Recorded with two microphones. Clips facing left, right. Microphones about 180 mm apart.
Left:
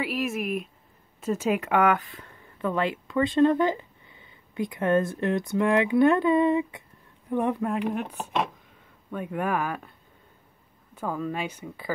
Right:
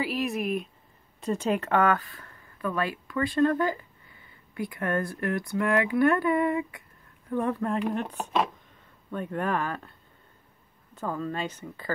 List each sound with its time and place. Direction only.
0.0 s a sound: centre (ahead or behind)
1.2 s speech: 5° left (ahead or behind)
11.0 s speech: 10° left (ahead or behind)